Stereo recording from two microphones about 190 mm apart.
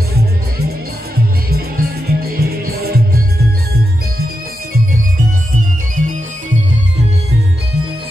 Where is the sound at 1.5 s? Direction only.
55° right (ahead or behind).